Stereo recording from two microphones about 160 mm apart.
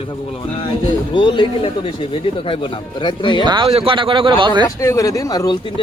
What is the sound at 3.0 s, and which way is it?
Speech, 30° left (ahead or behind).